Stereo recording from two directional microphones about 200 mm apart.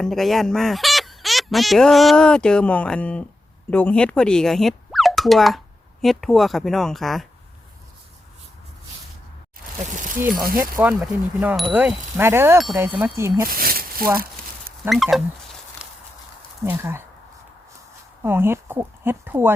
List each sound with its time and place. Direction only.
0.0 s speech: centre (ahead or behind)
9.8 s speech: 40° right (ahead or behind)
10.6 s speech: 10° right (ahead or behind)
13.5 s a sound: 45° right (ahead or behind)
14.8 s speech: centre (ahead or behind)
16.6 s speech: 10° right (ahead or behind)
18.2 s speech: 10° right (ahead or behind)